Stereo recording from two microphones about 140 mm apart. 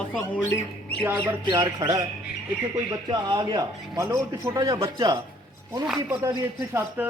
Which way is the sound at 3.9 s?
20° right (ahead or behind).